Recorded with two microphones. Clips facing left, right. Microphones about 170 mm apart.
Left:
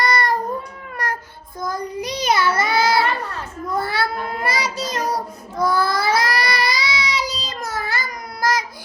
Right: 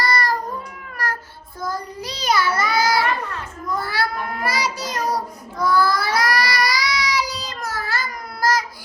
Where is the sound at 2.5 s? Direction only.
25° left (ahead or behind).